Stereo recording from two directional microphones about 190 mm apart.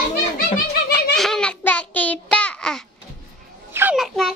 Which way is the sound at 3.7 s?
10° right (ahead or behind).